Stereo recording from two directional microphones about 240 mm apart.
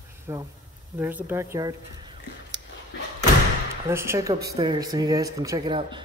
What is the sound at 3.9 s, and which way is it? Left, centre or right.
Speech, centre.